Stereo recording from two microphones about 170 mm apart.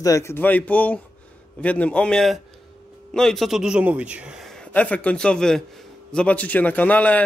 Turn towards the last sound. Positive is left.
turn(degrees=10)  # may be behind; listen again after turning